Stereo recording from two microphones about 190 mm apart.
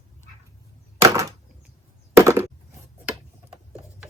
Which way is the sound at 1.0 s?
15° right (ahead or behind).